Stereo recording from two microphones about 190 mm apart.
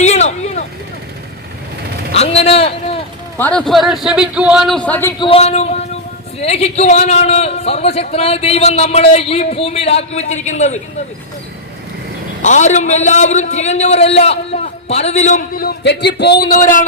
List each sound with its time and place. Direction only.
0.0 s vehicle: 35° left (ahead or behind)
2.1 s a man's voice: 35° left (ahead or behind)
3.3 s a man's voice: 5° left (ahead or behind)
5.2 s a man's voice: 30° left (ahead or behind)
12.4 s a man's voice: 40° left (ahead or behind)